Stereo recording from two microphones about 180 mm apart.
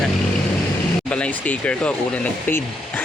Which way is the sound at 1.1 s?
10° left (ahead or behind).